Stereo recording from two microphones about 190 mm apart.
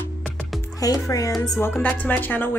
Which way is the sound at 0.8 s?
20° left (ahead or behind).